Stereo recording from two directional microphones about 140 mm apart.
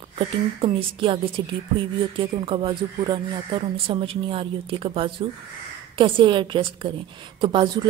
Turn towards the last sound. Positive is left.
turn(degrees=-35)  # may be behind; listen again after turning